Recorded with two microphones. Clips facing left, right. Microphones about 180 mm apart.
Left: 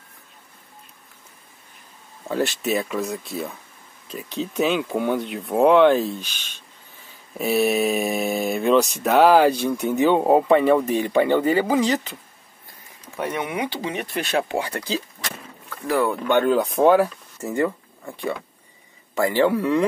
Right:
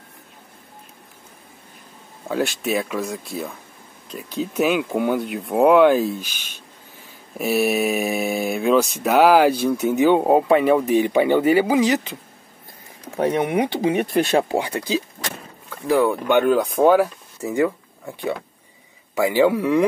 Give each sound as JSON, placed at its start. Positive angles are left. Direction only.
{"t": 2.2, "sound": "speech", "side_deg": 0}
{"t": 7.3, "sound": "speech", "side_deg": -5}
{"t": 13.1, "sound": "a sound", "side_deg": -55}
{"t": 13.4, "sound": "speech", "side_deg": -45}
{"t": 14.6, "sound": "speech", "side_deg": -15}
{"t": 16.5, "sound": "speech", "side_deg": 0}